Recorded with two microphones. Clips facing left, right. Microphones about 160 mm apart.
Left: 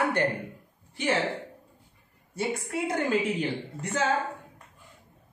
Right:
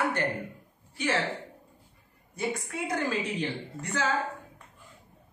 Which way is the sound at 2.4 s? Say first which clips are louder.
Left 3 dB; 25° left (ahead or behind).